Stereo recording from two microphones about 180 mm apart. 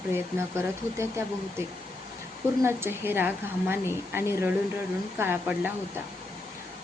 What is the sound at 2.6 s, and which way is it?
A woman's voice, 15° right (ahead or behind).